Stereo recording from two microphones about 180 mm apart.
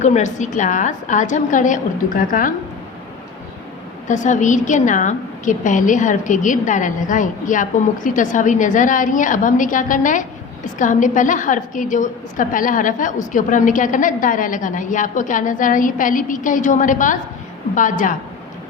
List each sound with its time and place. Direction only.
0.0 s a woman's voice: 40° left (ahead or behind)
4.1 s a woman's voice: 40° left (ahead or behind)